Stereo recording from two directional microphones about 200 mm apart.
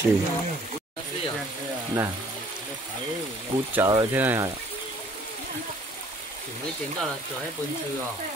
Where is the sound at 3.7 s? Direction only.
15° right (ahead or behind).